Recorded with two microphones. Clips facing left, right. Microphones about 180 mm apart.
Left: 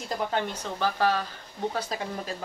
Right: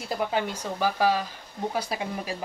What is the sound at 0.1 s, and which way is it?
Speech, 10° right (ahead or behind).